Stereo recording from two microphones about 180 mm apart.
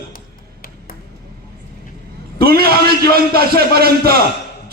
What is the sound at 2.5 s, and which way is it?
Speech, 60° right (ahead or behind).